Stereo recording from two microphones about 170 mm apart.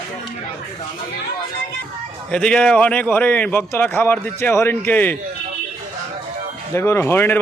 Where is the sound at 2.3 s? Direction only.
5° left (ahead or behind).